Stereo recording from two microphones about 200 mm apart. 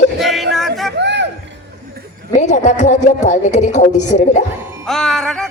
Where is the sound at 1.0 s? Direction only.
60° right (ahead or behind).